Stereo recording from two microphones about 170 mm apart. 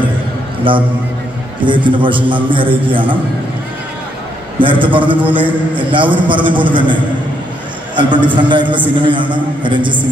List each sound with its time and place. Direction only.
0.7 s a man's voice: 30° right (ahead or behind)
4.6 s a man's voice: 30° right (ahead or behind)